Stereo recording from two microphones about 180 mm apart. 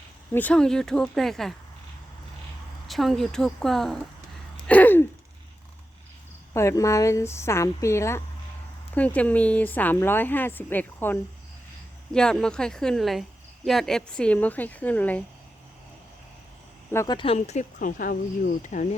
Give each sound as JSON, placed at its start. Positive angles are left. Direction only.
{"t": 0.3, "sound": "speech", "side_deg": 5}
{"t": 2.8, "sound": "speech", "side_deg": 0}
{"t": 4.6, "sound": "a sound", "side_deg": 10}
{"t": 6.5, "sound": "speech", "side_deg": 15}
{"t": 16.9, "sound": "speech", "side_deg": 15}
{"t": 17.2, "sound": "speech", "side_deg": 35}
{"t": 17.7, "sound": "speech", "side_deg": 50}